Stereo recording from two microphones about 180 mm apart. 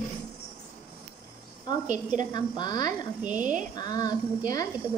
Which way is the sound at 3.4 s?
45° right (ahead or behind).